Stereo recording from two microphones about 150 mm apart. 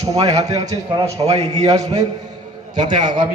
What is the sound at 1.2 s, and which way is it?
Speech, 45° right (ahead or behind).